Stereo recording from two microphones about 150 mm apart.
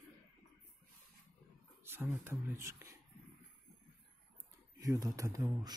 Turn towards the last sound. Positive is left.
turn(degrees=-20)  # may be behind; listen again after turning